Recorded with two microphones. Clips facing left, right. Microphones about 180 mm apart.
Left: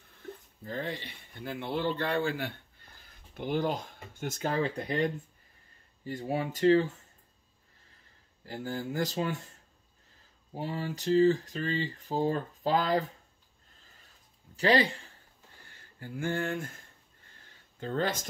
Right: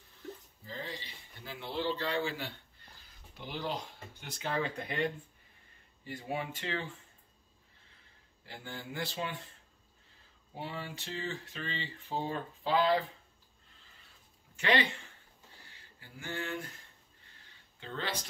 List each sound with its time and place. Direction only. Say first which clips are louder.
0.7 s speech: left 7 dB; 60° left (ahead or behind); by 7.0 s 40° left (ahead or behind)
8.5 s speech: left 9 dB; 40° left (ahead or behind)
10.5 s speech: left 6 dB; 40° left (ahead or behind)
14.6 s speech: left 5 dB; 35° left (ahead or behind)
15.6 s speech: left 11 dB; 50° left (ahead or behind)
17.4 s a sound: left 11 dB; 45° left (ahead or behind)